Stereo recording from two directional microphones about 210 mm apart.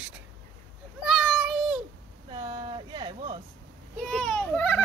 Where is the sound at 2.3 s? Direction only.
20° right (ahead or behind).